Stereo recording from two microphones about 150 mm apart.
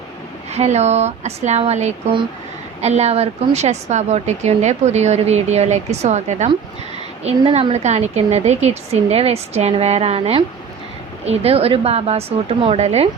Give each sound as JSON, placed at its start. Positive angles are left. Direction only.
{"t": 0.5, "sound": "a woman's voice", "side_deg": -50}